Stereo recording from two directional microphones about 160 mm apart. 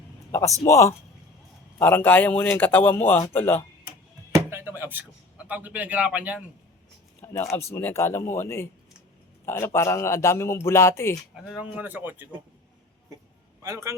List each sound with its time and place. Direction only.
0.3 s a man's voice: 15° left (ahead or behind)
4.4 s a sound: 15° right (ahead or behind)
5.5 s a man's voice: 10° right (ahead or behind)
7.5 s a man's voice: 15° left (ahead or behind)
11.4 s a man's voice: centre (ahead or behind)
13.6 s a man's voice: 20° right (ahead or behind)